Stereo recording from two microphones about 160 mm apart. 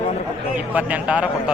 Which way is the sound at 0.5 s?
10° right (ahead or behind).